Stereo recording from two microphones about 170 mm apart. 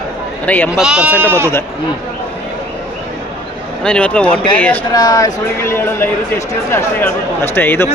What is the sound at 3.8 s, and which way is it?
Speech, 5° left (ahead or behind).